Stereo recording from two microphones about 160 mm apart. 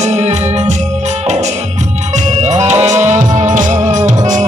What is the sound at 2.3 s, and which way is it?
Music, 45° right (ahead or behind).